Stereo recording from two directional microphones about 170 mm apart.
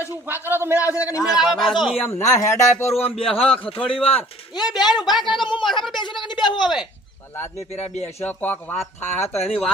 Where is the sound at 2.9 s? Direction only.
35° left (ahead or behind).